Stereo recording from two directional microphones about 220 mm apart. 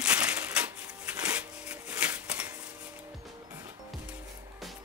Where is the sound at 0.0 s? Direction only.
5° right (ahead or behind).